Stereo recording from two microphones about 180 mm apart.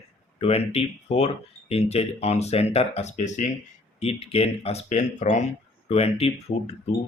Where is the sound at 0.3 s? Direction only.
35° left (ahead or behind).